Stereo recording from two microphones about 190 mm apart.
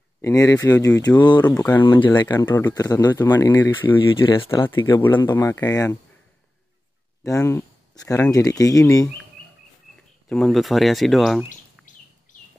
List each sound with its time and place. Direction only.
0.2 s speech: 15° left (ahead or behind)
1.4 s speech: 10° left (ahead or behind)
2.0 s speech: 20° left (ahead or behind)
3.9 s speech: 25° left (ahead or behind)
7.2 s speech: 15° left (ahead or behind)
10.2 s speech: centre (ahead or behind)
11.9 s a sound: 40° left (ahead or behind)
12.3 s chicken: 40° left (ahead or behind)